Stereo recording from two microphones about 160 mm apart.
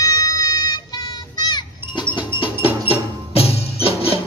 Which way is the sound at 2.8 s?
40° left (ahead or behind).